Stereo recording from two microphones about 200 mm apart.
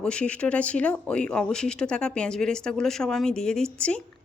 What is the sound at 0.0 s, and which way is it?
A woman's voice, 5° left (ahead or behind).